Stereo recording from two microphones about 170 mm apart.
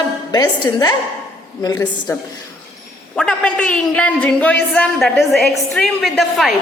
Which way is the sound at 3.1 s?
5° left (ahead or behind).